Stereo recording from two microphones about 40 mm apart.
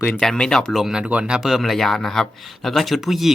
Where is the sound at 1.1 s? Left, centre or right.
Right.